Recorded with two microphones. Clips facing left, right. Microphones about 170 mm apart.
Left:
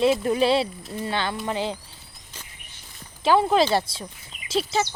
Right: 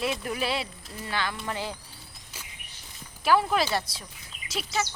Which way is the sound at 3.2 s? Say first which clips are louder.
Left 5 dB; 25° left (ahead or behind).